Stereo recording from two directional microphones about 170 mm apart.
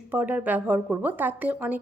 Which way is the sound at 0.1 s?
10° right (ahead or behind).